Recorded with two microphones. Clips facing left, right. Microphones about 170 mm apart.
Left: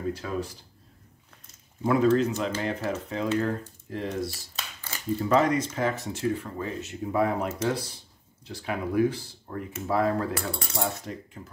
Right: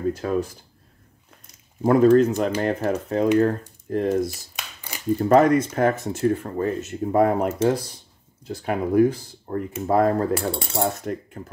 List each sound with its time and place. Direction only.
0.1 s speech: 45° right (ahead or behind)
1.8 s speech: 45° right (ahead or behind)
4.2 s a sound: 15° right (ahead or behind)
5.2 s speech: 55° right (ahead or behind)
10.3 s cutlery: 30° right (ahead or behind)
10.8 s speech: 50° right (ahead or behind)